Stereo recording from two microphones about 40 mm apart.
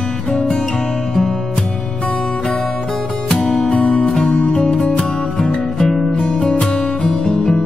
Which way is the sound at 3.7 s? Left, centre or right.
Left.